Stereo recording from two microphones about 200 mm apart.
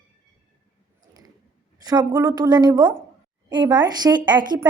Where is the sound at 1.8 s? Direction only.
20° right (ahead or behind).